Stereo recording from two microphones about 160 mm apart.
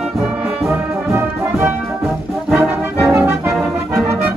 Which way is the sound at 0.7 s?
15° right (ahead or behind).